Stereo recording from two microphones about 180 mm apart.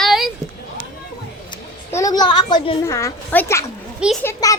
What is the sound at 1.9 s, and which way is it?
A woman's voice, 20° left (ahead or behind).